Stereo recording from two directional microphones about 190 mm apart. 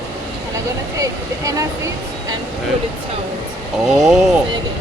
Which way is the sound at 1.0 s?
20° right (ahead or behind).